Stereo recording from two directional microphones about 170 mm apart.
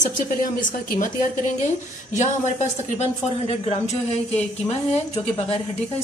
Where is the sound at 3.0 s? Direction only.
40° left (ahead or behind).